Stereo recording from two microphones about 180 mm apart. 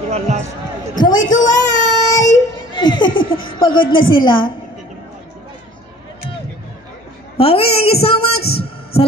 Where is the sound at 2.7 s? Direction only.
25° left (ahead or behind).